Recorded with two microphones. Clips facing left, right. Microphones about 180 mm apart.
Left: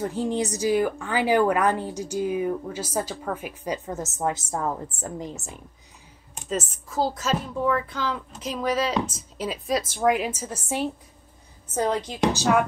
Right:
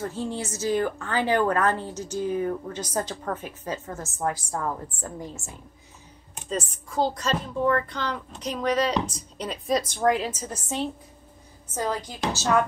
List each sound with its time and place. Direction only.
0.0 s a woman's voice: 15° left (ahead or behind)
6.5 s a woman's voice: 5° left (ahead or behind)
11.8 s a woman's voice: 20° left (ahead or behind)